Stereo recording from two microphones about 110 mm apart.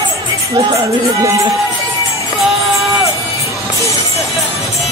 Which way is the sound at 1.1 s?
30° right (ahead or behind).